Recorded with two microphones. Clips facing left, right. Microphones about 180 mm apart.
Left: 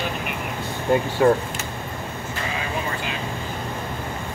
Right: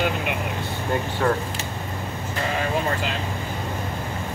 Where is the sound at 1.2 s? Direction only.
15° left (ahead or behind).